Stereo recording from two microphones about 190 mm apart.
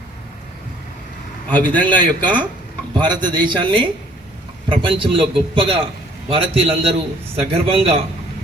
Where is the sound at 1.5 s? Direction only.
10° left (ahead or behind).